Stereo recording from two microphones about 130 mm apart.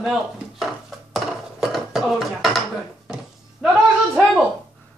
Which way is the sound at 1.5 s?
Centre (ahead or behind).